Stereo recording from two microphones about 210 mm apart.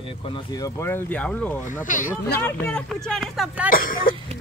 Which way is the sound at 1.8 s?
40° left (ahead or behind).